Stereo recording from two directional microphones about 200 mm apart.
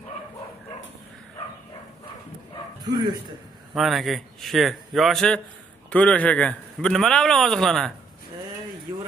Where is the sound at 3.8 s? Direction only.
Centre (ahead or behind).